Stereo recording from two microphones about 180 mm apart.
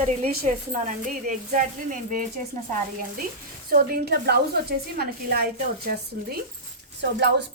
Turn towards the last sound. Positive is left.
turn(degrees=-70)  # may be behind; listen again after turning